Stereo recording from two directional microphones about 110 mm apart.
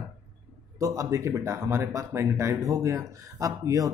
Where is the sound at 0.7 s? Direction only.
30° right (ahead or behind).